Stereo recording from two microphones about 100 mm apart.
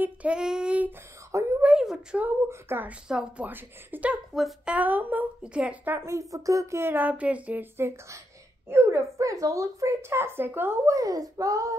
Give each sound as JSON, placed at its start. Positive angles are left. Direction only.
{"t": 0.0, "sound": "speech", "side_deg": -10}
{"t": 1.3, "sound": "speech", "side_deg": -30}
{"t": 1.6, "sound": "speech", "side_deg": -10}
{"t": 2.2, "sound": "speech", "side_deg": -25}
{"t": 3.1, "sound": "speech", "side_deg": -5}
{"t": 3.4, "sound": "speech", "side_deg": -20}
{"t": 4.3, "sound": "speech", "side_deg": 0}
{"t": 4.7, "sound": "speech", "side_deg": -15}
{"t": 5.9, "sound": "a woman's voice", "side_deg": -30}